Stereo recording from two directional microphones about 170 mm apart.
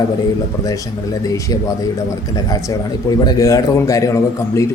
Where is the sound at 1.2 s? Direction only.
20° left (ahead or behind).